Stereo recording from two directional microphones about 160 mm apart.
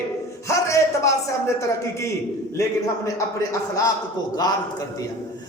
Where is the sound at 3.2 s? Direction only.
20° left (ahead or behind).